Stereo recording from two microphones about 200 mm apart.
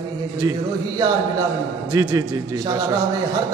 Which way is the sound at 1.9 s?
20° right (ahead or behind).